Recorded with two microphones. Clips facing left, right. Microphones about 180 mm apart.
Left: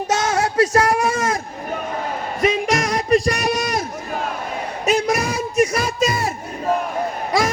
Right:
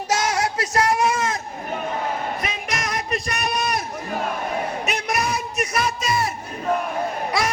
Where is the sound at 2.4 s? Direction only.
30° left (ahead or behind).